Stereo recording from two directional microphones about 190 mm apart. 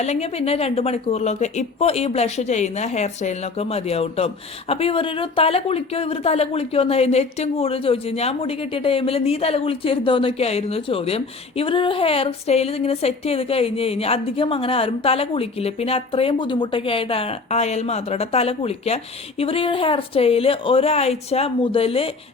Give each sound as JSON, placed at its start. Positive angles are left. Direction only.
{"t": 0.0, "sound": "speech", "side_deg": 35}